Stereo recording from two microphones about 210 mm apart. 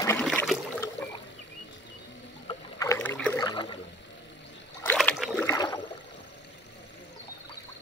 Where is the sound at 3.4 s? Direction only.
20° left (ahead or behind).